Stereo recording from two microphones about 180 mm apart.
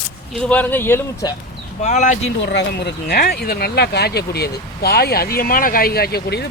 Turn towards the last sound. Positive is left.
turn(degrees=65)  # may be behind; listen again after turning